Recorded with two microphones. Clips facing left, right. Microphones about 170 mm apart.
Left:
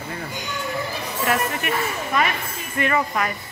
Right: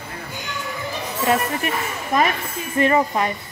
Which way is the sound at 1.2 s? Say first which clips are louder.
Right 3 dB; 25° right (ahead or behind).